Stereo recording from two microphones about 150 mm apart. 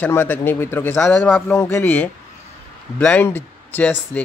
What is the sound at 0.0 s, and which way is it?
Speech, 10° left (ahead or behind).